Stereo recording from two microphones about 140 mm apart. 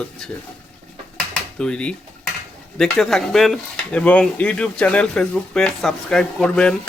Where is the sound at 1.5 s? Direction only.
5° left (ahead or behind).